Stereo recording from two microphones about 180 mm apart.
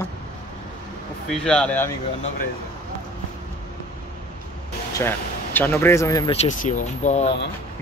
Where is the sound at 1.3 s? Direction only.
5° left (ahead or behind).